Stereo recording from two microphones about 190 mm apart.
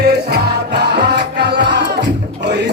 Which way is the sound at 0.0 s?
60° right (ahead or behind).